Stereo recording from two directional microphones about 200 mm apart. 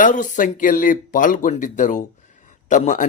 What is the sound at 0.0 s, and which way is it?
Speech, 40° left (ahead or behind).